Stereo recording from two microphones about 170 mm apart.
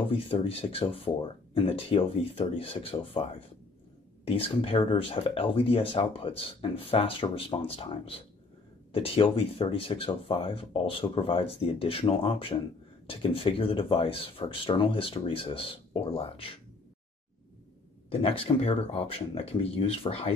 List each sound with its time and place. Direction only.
0.1 s speech: 35° left (ahead or behind)
18.2 s speech: 35° left (ahead or behind)